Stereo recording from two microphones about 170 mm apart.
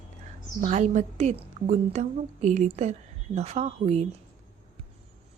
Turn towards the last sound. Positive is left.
turn(degrees=-40)  # may be behind; listen again after turning